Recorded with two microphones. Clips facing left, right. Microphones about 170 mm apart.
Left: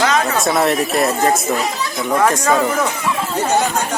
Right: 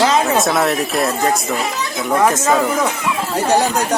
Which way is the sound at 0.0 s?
30° right (ahead or behind).